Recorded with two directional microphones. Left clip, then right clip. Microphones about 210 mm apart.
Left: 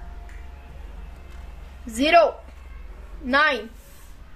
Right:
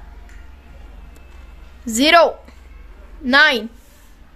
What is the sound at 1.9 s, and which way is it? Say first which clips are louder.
A woman's voice: right 5 dB; 50° right (ahead or behind).